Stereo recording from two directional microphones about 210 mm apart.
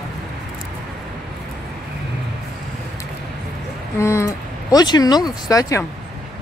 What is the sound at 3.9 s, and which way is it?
Speech, 15° left (ahead or behind).